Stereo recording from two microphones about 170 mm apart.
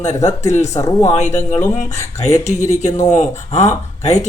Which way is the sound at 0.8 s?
20° left (ahead or behind).